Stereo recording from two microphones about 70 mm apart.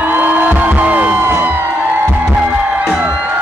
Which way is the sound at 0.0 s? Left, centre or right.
Right.